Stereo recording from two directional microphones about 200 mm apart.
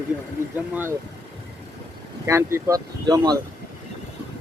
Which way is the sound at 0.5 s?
10° right (ahead or behind).